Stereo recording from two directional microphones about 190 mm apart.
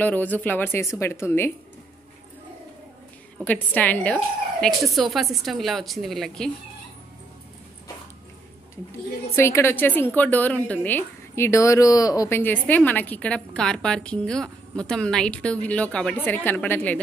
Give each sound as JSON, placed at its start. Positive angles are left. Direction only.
{"t": 0.0, "sound": "a woman's voice", "side_deg": 10}
{"t": 3.4, "sound": "speech", "side_deg": 10}
{"t": 9.3, "sound": "a woman's voice", "side_deg": 15}